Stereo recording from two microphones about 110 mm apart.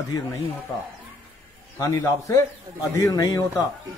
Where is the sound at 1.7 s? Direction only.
35° left (ahead or behind).